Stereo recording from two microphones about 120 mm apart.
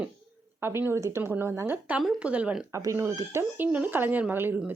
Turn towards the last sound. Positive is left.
turn(degrees=-15)  # may be behind; listen again after turning